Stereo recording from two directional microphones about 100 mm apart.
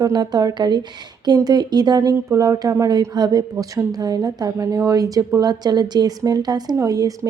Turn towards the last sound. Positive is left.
turn(degrees=-35)  # may be behind; listen again after turning